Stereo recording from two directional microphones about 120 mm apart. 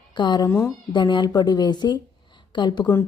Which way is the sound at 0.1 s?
40° left (ahead or behind).